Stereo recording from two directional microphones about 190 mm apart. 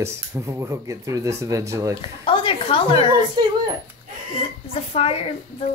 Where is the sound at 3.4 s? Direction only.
20° right (ahead or behind).